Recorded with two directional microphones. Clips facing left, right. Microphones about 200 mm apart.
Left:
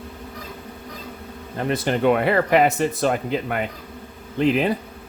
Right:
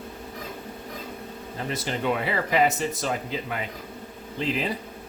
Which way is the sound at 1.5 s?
60° left (ahead or behind).